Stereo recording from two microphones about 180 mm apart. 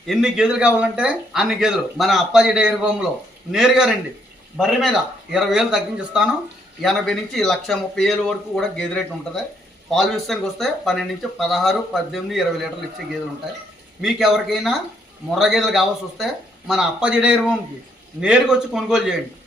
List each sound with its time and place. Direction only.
0.1 s speech: 5° right (ahead or behind)
14.0 s speech: centre (ahead or behind)